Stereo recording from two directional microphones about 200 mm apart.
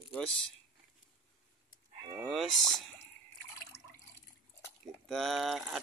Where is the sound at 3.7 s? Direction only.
55° left (ahead or behind).